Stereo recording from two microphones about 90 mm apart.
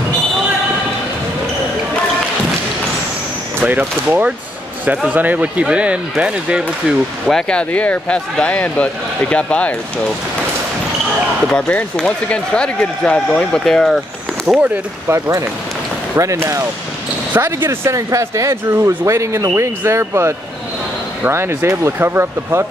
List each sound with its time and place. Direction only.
3.6 s speech: 20° right (ahead or behind)
7.2 s speech: 10° left (ahead or behind)
11.5 s speech: 15° left (ahead or behind)
14.4 s speech: 20° right (ahead or behind)
15.1 s speech: 35° right (ahead or behind)